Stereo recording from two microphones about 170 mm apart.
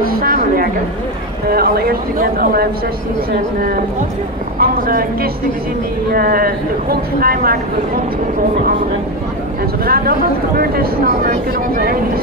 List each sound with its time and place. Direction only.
0.0 s a sound: 60° right (ahead or behind)
1.5 s speech: 65° right (ahead or behind)
4.6 s speech: 60° right (ahead or behind)
9.8 s speech: 60° right (ahead or behind)